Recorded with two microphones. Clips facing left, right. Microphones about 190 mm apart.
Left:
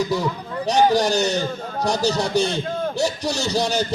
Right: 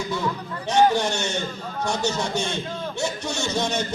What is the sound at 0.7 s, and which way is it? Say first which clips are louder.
A man's voice: left 2 dB; 35° left (ahead or behind).